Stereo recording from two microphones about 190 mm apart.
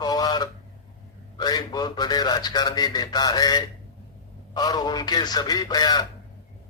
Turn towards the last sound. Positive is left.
turn(degrees=20)  # may be behind; listen again after turning